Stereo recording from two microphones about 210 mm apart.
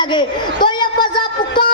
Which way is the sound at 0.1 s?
20° left (ahead or behind).